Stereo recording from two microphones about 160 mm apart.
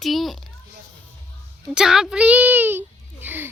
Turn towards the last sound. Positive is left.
turn(degrees=-10)  # may be behind; listen again after turning